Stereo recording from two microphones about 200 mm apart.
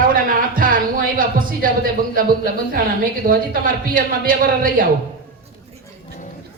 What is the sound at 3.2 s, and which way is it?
A man's voice, 45° right (ahead or behind).